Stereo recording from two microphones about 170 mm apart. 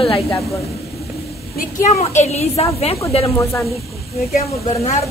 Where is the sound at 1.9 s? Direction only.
40° left (ahead or behind).